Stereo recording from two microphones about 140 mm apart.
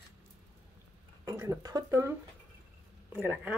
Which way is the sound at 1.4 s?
25° right (ahead or behind).